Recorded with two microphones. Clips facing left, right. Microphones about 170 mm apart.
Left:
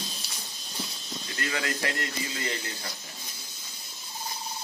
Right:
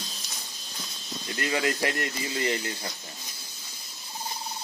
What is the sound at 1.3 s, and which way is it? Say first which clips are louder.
Speech: right 5 dB; 20° right (ahead or behind).